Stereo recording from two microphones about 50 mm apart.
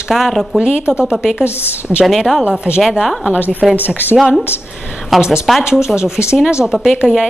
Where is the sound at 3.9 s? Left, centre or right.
Right.